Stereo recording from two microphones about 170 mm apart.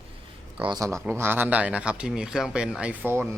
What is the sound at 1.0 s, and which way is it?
A man's voice, 15° right (ahead or behind).